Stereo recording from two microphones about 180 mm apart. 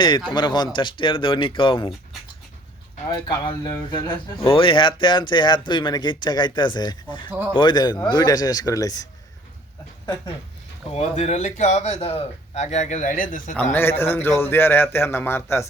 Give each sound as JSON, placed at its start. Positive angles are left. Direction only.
{"t": 0.3, "sound": "speech", "side_deg": 25}
{"t": 3.1, "sound": "speech", "side_deg": 25}
{"t": 10.9, "sound": "speech", "side_deg": 40}
{"t": 13.6, "sound": "a man's voice", "side_deg": 10}